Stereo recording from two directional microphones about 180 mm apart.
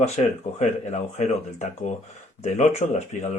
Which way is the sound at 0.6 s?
40° left (ahead or behind).